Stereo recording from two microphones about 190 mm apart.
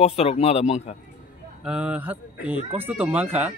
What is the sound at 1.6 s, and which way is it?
Speech, 5° right (ahead or behind).